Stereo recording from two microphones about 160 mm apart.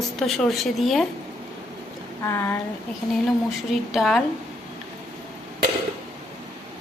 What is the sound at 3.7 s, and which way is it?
Speech, centre (ahead or behind).